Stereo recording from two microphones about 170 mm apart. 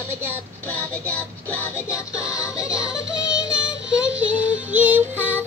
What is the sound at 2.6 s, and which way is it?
Music, 5° right (ahead or behind).